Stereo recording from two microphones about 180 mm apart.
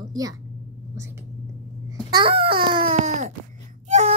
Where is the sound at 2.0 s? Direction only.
25° right (ahead or behind).